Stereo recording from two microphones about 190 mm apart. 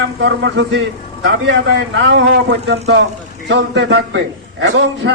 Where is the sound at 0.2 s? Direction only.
75° right (ahead or behind).